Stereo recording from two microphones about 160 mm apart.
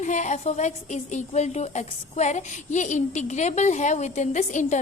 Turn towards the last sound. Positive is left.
turn(degrees=45)  # may be behind; listen again after turning